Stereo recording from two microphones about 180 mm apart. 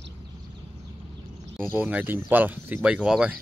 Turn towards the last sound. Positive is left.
turn(degrees=-5)  # may be behind; listen again after turning